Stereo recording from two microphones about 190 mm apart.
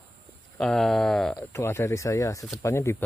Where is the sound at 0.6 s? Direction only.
Centre (ahead or behind).